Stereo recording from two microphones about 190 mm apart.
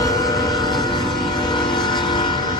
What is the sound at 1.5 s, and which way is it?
Vehicle, 25° left (ahead or behind).